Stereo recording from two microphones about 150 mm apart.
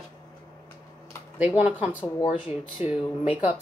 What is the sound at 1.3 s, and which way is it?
Speech, 10° right (ahead or behind).